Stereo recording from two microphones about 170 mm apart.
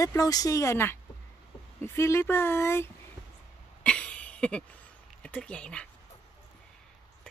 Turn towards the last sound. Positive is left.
turn(degrees=5)  # may be behind; listen again after turning